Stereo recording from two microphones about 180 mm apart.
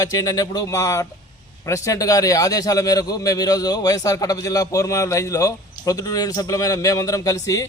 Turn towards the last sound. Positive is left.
turn(degrees=20)  # may be behind; listen again after turning